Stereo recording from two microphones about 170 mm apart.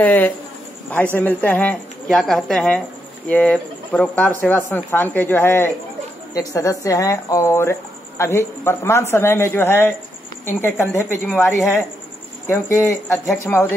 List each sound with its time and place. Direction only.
0.0 s a woman's voice: 10° left (ahead or behind)